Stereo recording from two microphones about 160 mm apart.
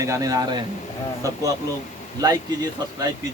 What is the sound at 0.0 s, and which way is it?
Speech, 20° right (ahead or behind).